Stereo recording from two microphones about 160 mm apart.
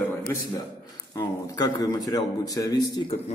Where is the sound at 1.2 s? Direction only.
20° left (ahead or behind).